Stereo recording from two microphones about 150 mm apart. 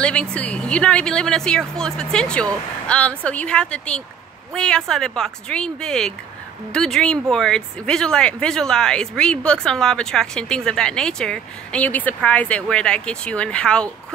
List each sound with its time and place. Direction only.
0.0 s speech: 5° left (ahead or behind)